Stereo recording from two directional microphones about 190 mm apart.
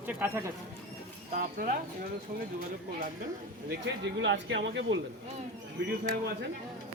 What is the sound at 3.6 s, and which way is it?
A man's voice, 70° right (ahead or behind).